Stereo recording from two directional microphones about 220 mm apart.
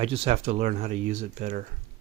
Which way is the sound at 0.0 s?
25° right (ahead or behind).